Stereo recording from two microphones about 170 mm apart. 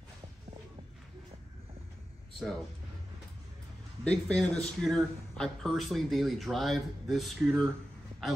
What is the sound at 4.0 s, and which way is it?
A man's voice, 5° left (ahead or behind).